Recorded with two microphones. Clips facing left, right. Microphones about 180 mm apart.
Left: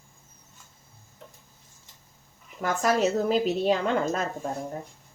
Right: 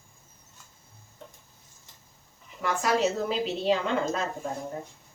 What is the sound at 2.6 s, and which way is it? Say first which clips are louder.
A woman's voice: left 2 dB; 45° left (ahead or behind).